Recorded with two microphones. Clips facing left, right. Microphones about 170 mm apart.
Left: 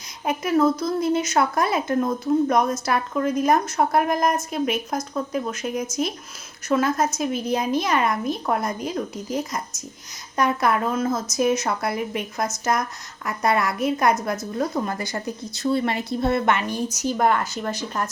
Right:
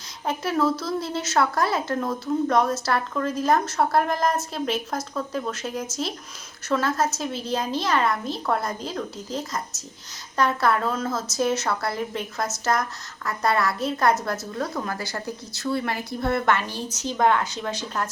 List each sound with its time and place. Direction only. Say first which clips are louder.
0.3 s a woman's voice: left 4 dB; 15° left (ahead or behind)